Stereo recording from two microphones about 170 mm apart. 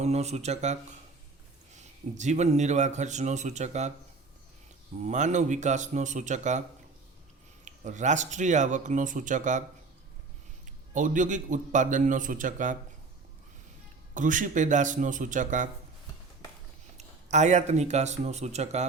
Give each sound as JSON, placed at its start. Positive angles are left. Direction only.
{"t": 0.0, "sound": "a man's voice", "side_deg": -40}
{"t": 5.0, "sound": "a man's voice", "side_deg": -45}
{"t": 7.6, "sound": "a man's voice", "side_deg": -45}
{"t": 10.9, "sound": "a man's voice", "side_deg": -50}
{"t": 14.1, "sound": "a man's voice", "side_deg": -50}
{"t": 17.0, "sound": "speech", "side_deg": -45}